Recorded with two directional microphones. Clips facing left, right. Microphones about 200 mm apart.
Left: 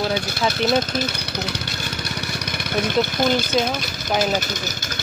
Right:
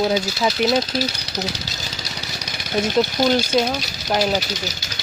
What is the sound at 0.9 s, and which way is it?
Vehicle, 55° left (ahead or behind).